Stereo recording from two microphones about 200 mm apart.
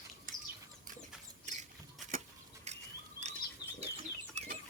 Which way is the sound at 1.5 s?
35° right (ahead or behind).